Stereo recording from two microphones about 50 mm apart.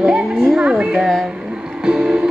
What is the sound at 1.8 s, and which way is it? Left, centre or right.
Music, centre.